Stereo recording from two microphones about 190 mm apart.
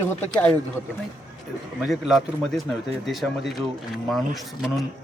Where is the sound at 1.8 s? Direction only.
Centre (ahead or behind).